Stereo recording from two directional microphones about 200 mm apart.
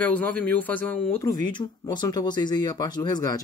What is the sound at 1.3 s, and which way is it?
Speech, 20° left (ahead or behind).